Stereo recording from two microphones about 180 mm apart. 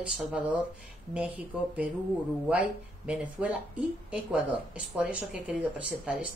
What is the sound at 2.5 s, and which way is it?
Speech, 5° right (ahead or behind).